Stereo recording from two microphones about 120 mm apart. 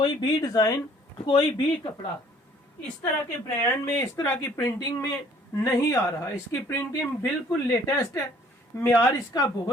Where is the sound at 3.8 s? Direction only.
20° left (ahead or behind).